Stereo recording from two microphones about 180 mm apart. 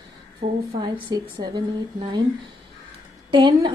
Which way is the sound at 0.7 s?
25° right (ahead or behind).